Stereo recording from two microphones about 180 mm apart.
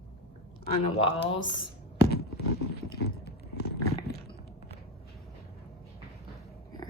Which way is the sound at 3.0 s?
65° left (ahead or behind).